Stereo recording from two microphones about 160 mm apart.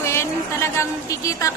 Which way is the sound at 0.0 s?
15° left (ahead or behind).